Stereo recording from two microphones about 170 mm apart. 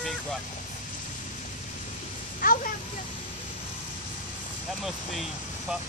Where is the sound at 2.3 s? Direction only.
55° left (ahead or behind).